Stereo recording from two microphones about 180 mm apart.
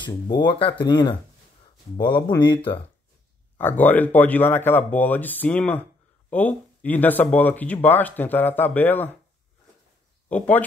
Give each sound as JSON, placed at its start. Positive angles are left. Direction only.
{"t": 0.0, "sound": "speech", "side_deg": 25}
{"t": 3.5, "sound": "speech", "side_deg": 10}
{"t": 10.3, "sound": "speech", "side_deg": 10}